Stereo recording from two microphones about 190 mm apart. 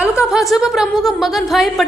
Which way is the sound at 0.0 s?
5° right (ahead or behind).